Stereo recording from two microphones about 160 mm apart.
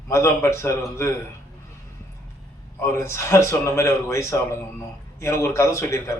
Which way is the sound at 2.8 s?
20° left (ahead or behind).